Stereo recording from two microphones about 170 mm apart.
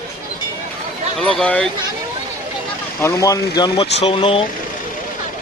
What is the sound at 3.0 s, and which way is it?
Speech, 15° left (ahead or behind).